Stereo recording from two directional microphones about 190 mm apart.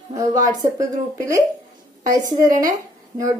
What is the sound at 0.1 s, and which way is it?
Speech, 20° right (ahead or behind).